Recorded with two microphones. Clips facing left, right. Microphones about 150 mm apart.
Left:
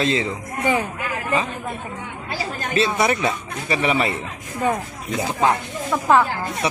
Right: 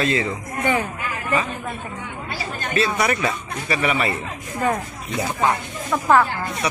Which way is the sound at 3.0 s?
25° left (ahead or behind).